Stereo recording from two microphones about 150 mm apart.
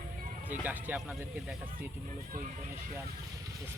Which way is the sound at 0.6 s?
10° right (ahead or behind).